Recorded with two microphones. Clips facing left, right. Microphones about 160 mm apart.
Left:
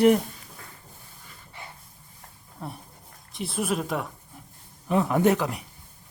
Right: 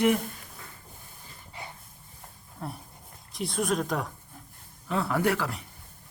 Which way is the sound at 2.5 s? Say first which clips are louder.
Even; centre (ahead or behind).